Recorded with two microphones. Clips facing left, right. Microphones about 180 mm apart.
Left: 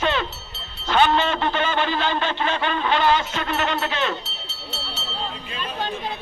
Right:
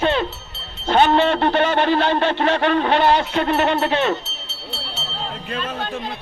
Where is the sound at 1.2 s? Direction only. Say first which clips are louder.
Right 6 dB; 60° right (ahead or behind).